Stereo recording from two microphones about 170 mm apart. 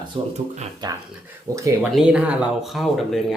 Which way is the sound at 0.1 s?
30° right (ahead or behind).